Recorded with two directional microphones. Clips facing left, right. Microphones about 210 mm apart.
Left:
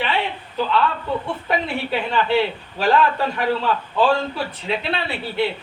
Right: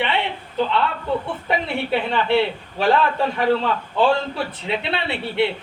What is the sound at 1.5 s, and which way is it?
A man's voice, 25° right (ahead or behind).